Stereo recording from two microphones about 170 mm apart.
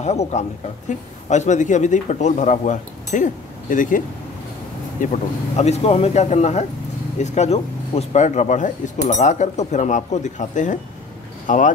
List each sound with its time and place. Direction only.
0.0 s a man's voice: 40° left (ahead or behind)
5.0 s a man's voice: 45° left (ahead or behind)